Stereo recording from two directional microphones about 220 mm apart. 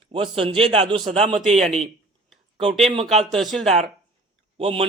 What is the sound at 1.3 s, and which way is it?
Speech, centre (ahead or behind).